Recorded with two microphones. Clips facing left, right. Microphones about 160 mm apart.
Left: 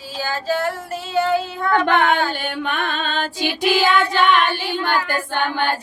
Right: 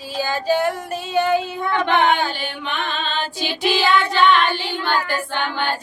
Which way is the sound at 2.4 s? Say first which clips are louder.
Left 3 dB; 50° left (ahead or behind).